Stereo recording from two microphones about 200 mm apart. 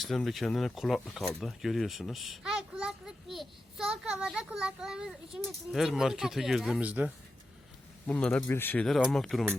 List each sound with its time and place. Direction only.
0.0 s speech: centre (ahead or behind)
8.0 s speech: 5° left (ahead or behind)